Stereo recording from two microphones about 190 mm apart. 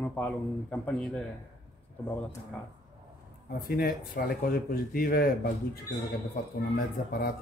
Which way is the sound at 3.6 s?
50° left (ahead or behind).